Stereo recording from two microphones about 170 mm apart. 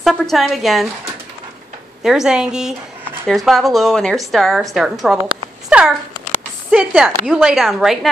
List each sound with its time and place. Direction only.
0.0 s a woman's voice: centre (ahead or behind)
2.0 s a woman's voice: 5° right (ahead or behind)
5.7 s a sound: 5° right (ahead or behind)
6.7 s a woman's voice: 10° right (ahead or behind)